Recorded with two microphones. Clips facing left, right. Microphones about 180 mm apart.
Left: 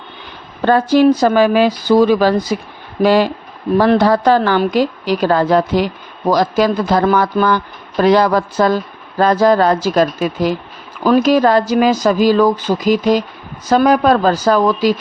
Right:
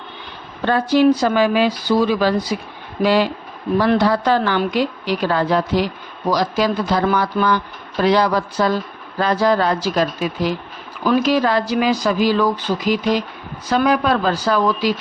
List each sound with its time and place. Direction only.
0.6 s a woman's voice: 45° left (ahead or behind)